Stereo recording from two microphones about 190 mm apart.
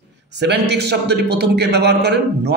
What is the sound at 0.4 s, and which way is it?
A man's voice, 60° right (ahead or behind).